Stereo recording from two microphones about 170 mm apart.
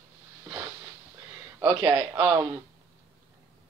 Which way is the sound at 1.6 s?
10° right (ahead or behind).